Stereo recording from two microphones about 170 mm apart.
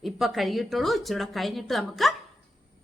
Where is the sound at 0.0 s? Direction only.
Centre (ahead or behind).